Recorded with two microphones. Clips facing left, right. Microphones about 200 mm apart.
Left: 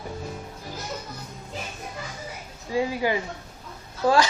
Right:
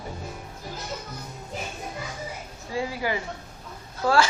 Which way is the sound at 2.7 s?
20° left (ahead or behind).